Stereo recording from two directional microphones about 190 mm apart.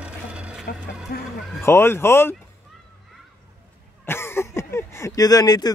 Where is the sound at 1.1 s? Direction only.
55° left (ahead or behind).